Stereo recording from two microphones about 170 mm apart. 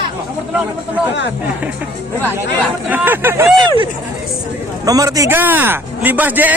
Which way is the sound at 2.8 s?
10° right (ahead or behind).